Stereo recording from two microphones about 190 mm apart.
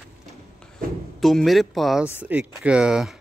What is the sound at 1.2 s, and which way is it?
Speech, centre (ahead or behind).